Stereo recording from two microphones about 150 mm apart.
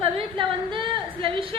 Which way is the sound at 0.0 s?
35° right (ahead or behind).